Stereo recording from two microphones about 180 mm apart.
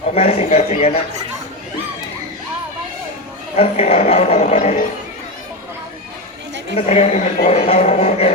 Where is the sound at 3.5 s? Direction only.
35° left (ahead or behind).